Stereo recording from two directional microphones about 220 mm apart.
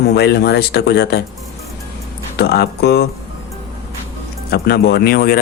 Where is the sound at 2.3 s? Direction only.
45° left (ahead or behind).